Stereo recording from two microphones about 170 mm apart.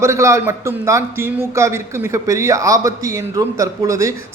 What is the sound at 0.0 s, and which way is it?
Speech, 15° right (ahead or behind).